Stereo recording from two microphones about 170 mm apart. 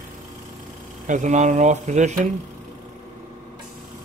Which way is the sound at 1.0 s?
45° right (ahead or behind).